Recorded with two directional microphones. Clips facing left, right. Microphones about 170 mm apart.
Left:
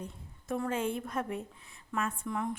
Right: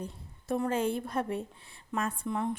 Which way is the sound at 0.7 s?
35° right (ahead or behind).